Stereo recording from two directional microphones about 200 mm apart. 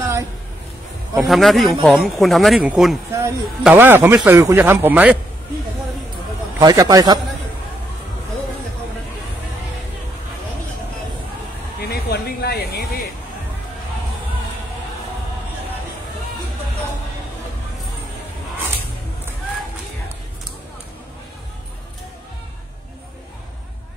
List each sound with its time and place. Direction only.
1.1 s speech: centre (ahead or behind)
3.1 s a man's voice: 15° right (ahead or behind)
6.6 s a man's voice: 20° right (ahead or behind)
11.8 s a sound: 55° left (ahead or behind)